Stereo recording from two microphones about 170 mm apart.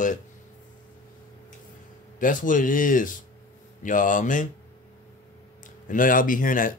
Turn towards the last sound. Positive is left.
turn(degrees=50)  # may be behind; listen again after turning